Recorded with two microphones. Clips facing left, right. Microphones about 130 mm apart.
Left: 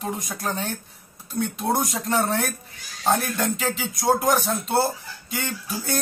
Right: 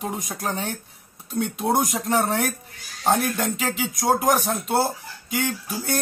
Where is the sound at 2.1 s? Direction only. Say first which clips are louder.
Even; 10° right (ahead or behind).